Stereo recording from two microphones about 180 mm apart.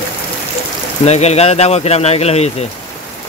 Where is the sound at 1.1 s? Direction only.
35° left (ahead or behind).